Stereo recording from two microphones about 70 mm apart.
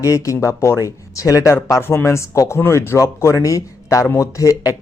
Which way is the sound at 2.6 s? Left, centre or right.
Left.